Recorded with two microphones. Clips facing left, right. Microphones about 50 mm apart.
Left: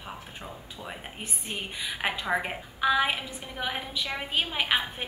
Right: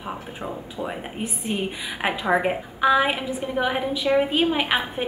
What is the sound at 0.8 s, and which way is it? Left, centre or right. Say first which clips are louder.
A woman's voice: right 8 dB; centre.